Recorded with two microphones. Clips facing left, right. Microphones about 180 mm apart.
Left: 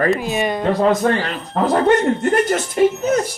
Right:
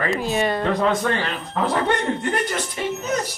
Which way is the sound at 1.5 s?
40° left (ahead or behind).